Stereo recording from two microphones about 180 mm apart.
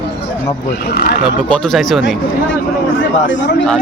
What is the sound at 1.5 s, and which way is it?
Speech, 5° left (ahead or behind).